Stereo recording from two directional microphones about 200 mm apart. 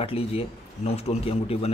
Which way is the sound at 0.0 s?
30° left (ahead or behind).